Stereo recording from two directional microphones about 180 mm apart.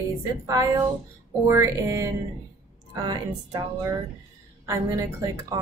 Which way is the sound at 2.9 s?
20° right (ahead or behind).